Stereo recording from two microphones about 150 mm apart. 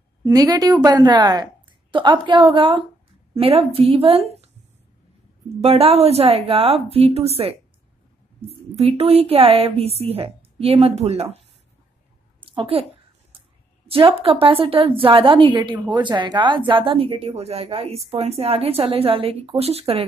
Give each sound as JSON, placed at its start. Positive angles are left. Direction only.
{"t": 0.2, "sound": "a woman's voice", "side_deg": -25}
{"t": 5.6, "sound": "speech", "side_deg": -40}
{"t": 12.4, "sound": "a sound", "side_deg": -35}
{"t": 13.8, "sound": "speech", "side_deg": -40}